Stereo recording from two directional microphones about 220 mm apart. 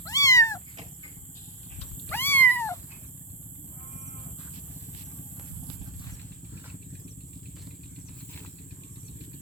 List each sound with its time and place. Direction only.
0.0 s cat: 15° left (ahead or behind)
2.0 s cat: 10° left (ahead or behind)